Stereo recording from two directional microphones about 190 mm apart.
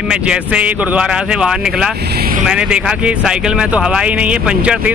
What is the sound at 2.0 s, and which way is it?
Speech, 55° right (ahead or behind).